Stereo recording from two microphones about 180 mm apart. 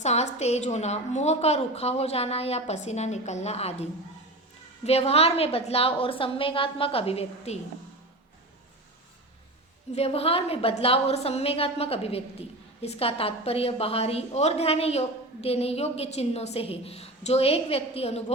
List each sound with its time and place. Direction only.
0.0 s a woman's voice: 40° left (ahead or behind)
9.9 s a woman's voice: 35° left (ahead or behind)